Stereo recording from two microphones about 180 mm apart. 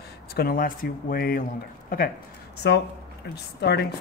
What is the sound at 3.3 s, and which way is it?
Speech, 65° left (ahead or behind).